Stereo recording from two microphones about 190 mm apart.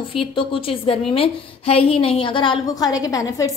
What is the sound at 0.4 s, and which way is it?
A woman's voice, 30° left (ahead or behind).